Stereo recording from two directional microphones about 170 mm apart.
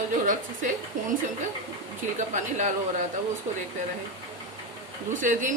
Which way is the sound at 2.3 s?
45° right (ahead or behind).